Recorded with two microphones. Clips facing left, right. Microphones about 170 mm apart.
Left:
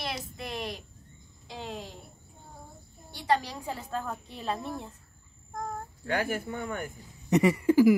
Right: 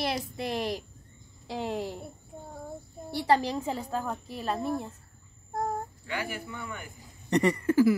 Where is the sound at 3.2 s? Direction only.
25° right (ahead or behind).